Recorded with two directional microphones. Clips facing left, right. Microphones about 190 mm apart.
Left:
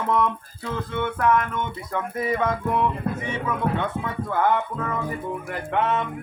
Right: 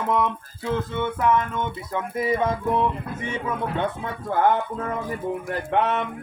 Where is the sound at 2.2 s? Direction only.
25° right (ahead or behind).